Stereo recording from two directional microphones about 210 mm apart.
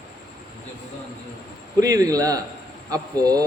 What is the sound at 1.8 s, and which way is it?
A man's voice, 15° right (ahead or behind).